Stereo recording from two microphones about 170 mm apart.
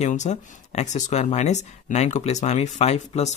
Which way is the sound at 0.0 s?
45° left (ahead or behind).